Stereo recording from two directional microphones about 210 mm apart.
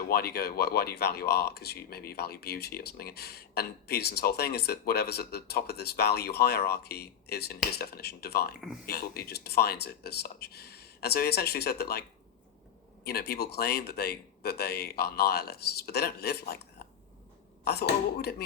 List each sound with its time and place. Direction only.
0.1 s speech: 50° left (ahead or behind)
13.1 s speech: 50° left (ahead or behind)